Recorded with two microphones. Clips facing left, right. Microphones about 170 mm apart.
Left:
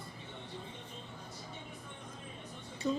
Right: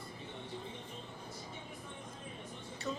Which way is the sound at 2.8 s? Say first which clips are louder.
Left 7 dB; 30° left (ahead or behind).